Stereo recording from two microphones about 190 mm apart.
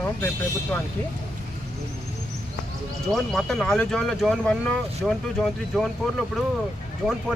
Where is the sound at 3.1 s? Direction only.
Centre (ahead or behind).